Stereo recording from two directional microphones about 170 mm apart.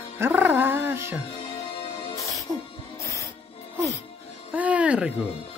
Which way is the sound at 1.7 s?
20° left (ahead or behind).